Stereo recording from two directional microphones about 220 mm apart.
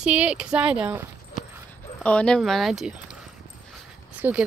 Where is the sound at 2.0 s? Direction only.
5° left (ahead or behind).